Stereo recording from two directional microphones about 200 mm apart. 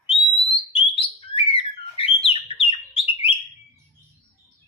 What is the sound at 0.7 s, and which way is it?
Bird, 25° left (ahead or behind).